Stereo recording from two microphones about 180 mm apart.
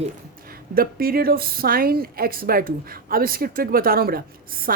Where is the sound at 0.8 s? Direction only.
55° right (ahead or behind).